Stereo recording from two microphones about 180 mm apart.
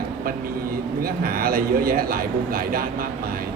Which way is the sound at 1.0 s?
55° right (ahead or behind).